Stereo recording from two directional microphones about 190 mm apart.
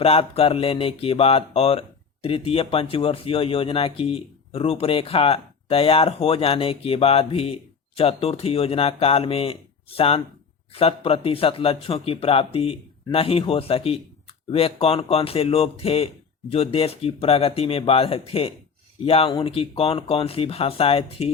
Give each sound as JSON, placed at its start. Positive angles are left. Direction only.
{"t": 0.0, "sound": "speech", "side_deg": 30}